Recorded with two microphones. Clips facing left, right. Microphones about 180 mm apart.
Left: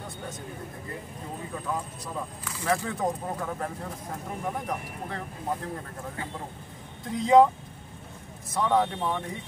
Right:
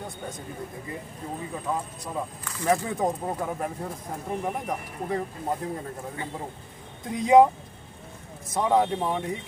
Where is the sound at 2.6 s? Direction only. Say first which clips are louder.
Right 3 dB; 15° right (ahead or behind).